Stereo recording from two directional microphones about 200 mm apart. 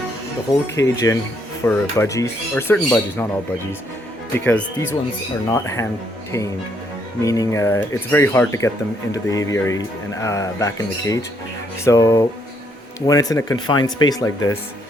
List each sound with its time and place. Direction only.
0.8 s speech: 15° left (ahead or behind)
4.4 s speech: 10° left (ahead or behind)
7.2 s speech: 15° left (ahead or behind)